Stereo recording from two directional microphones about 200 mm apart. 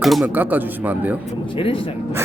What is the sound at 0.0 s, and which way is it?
Speech, centre (ahead or behind).